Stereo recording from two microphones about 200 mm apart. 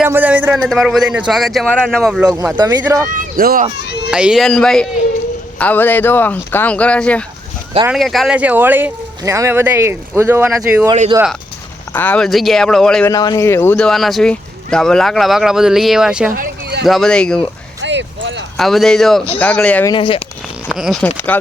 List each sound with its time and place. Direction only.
0.0 s a sound: 10° right (ahead or behind)
0.6 s speech: centre (ahead or behind)
2.6 s speech: 20° right (ahead or behind)
3.1 s speech: 45° right (ahead or behind)
3.8 s speech: 55° left (ahead or behind)
4.1 s speech: 5° right (ahead or behind)
11.9 s speech: 5° left (ahead or behind)
13.1 s speech: 20° left (ahead or behind); by 16.3 s 5° right (ahead or behind)
16.3 s a sound: 50° right (ahead or behind)
16.8 s speech: centre (ahead or behind)
17.8 s a sound: 65° right (ahead or behind)
18.5 s speech: centre (ahead or behind)
19.9 s speech: 25° left (ahead or behind)
20.7 s speech: centre (ahead or behind)